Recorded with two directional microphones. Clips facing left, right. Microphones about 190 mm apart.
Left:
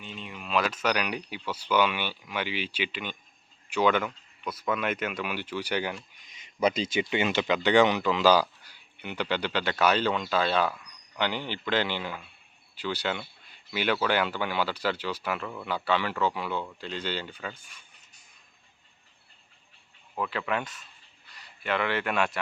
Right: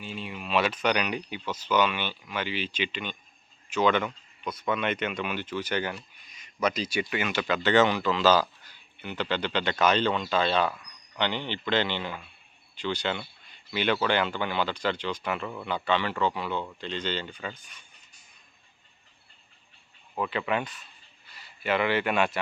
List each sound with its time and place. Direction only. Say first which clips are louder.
0.0 s speech: right 4 dB; 5° right (ahead or behind); by 5.9 s 10° left (ahead or behind)
6.6 s speech: left 2 dB; 30° left (ahead or behind); by 17.5 s 5° left (ahead or behind)
20.1 s speech: right 2 dB; 5° right (ahead or behind)